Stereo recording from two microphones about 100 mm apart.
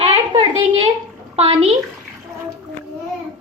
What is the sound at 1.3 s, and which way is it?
Speech, 80° right.